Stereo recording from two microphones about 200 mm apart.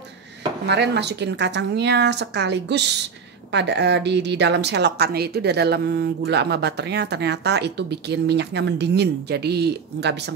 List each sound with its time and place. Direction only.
0.7 s a woman's voice: 55° right (ahead or behind)